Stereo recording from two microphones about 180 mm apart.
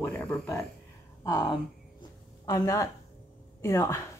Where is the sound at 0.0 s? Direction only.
10° left (ahead or behind).